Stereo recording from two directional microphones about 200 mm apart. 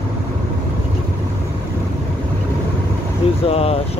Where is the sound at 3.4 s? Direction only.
30° left (ahead or behind).